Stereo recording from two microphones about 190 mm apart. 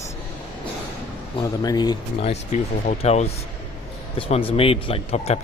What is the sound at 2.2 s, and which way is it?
Speech, 35° left (ahead or behind).